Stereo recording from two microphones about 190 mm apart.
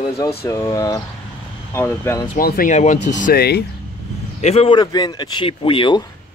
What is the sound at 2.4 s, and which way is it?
Speech, 50° left (ahead or behind).